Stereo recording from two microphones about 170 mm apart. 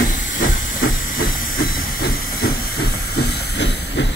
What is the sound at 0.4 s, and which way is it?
Hiss, 55° left (ahead or behind).